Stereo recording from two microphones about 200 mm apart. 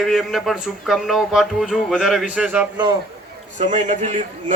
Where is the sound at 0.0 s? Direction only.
Centre (ahead or behind).